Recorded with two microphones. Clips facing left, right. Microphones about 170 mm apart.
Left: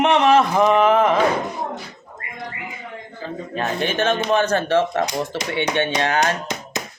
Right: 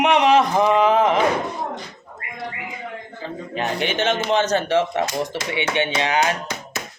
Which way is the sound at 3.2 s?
20° right (ahead or behind).